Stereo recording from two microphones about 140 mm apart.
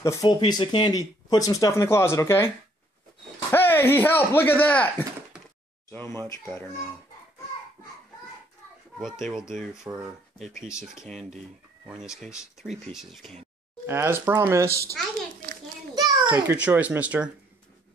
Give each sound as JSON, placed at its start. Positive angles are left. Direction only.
{"t": 0.0, "sound": "speech", "side_deg": 25}
{"t": 0.4, "sound": "speech", "side_deg": 35}
{"t": 3.5, "sound": "speech", "side_deg": 15}
{"t": 9.2, "sound": "speech", "side_deg": -5}
{"t": 12.6, "sound": "speech", "side_deg": 0}
{"t": 13.8, "sound": "speech", "side_deg": -20}
{"t": 15.9, "sound": "a sound", "side_deg": -30}
{"t": 16.4, "sound": "speech", "side_deg": -10}